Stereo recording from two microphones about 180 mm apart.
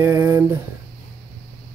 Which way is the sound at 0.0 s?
15° right (ahead or behind).